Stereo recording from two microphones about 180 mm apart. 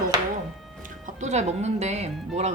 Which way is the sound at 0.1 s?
20° right (ahead or behind).